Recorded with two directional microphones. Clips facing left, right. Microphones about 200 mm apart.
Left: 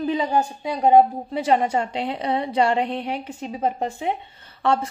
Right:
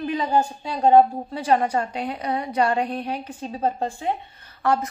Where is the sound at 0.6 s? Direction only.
15° left (ahead or behind).